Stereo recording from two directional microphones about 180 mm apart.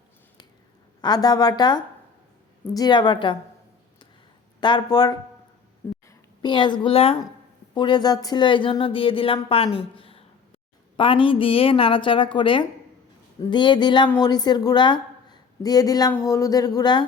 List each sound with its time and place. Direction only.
1.0 s a woman's voice: 20° left (ahead or behind)
4.6 s a woman's voice: 25° left (ahead or behind)